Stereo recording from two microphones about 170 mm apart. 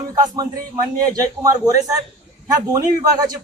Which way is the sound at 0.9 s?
20° right (ahead or behind).